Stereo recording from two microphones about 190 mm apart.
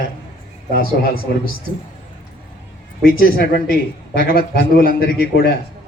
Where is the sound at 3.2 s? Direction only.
50° left (ahead or behind).